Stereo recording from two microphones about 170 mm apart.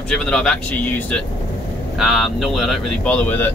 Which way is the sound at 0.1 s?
5° left (ahead or behind).